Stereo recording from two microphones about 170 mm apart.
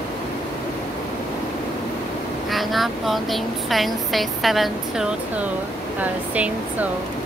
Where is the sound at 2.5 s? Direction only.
Centre (ahead or behind).